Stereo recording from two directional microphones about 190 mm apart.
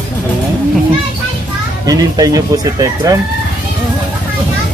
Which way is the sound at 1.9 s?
20° right (ahead or behind).